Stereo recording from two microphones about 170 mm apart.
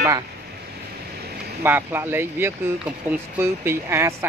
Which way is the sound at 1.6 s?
15° right (ahead or behind).